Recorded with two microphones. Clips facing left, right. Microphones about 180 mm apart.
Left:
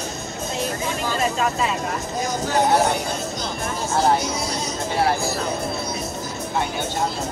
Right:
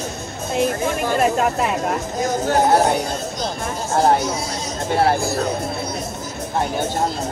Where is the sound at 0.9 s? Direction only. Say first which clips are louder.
Right 5 dB; 55° right (ahead or behind).